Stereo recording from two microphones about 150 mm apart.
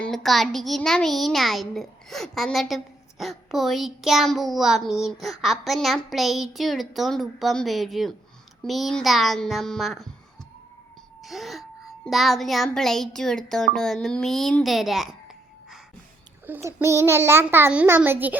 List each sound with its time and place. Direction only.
0.0 s a child's voice: centre (ahead or behind)
11.2 s a child's voice: centre (ahead or behind)
16.6 s a child's voice: 20° right (ahead or behind)